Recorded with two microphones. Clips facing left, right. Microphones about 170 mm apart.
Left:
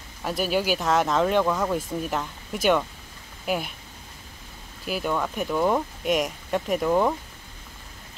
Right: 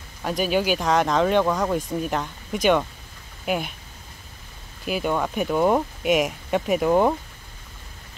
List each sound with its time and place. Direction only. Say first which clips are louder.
0.2 s speech: right 2 dB; 5° left (ahead or behind)
4.8 s speech: right 3 dB; centre (ahead or behind)
6.9 s speech: right 3 dB; 20° right (ahead or behind)